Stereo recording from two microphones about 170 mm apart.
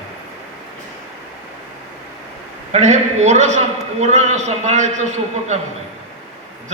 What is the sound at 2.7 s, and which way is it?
A man's voice, 40° right (ahead or behind).